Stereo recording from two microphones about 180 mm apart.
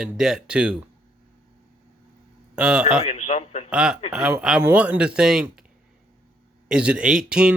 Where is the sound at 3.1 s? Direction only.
40° left (ahead or behind).